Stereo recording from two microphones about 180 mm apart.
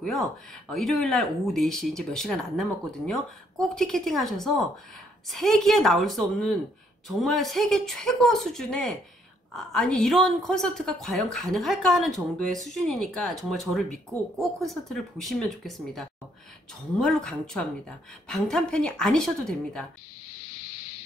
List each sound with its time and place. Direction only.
0.0 s a woman's voice: centre (ahead or behind)
3.6 s a woman's voice: centre (ahead or behind)
20.5 s boat: 60° left (ahead or behind)